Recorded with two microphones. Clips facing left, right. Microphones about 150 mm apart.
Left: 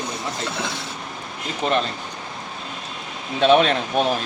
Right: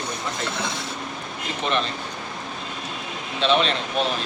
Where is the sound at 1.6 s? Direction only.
35° left (ahead or behind).